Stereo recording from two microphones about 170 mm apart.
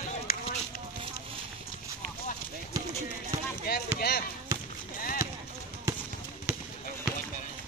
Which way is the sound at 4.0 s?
65° left (ahead or behind).